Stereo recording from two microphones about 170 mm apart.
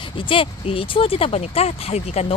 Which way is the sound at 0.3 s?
30° left (ahead or behind).